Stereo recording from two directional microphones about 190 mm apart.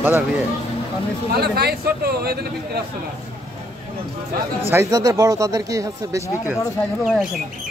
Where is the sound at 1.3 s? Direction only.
55° right (ahead or behind).